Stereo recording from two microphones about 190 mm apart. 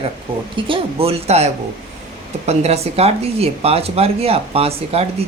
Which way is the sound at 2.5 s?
35° right (ahead or behind).